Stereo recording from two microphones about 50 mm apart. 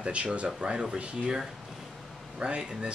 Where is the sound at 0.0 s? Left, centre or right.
Right.